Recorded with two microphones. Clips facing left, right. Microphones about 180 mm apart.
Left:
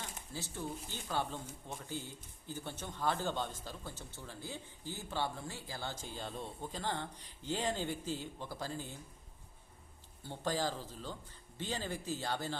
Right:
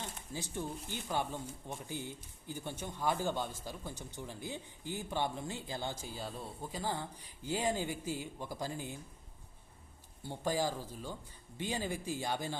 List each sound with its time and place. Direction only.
0.3 s speech: 15° right (ahead or behind)
10.2 s speech: 10° right (ahead or behind)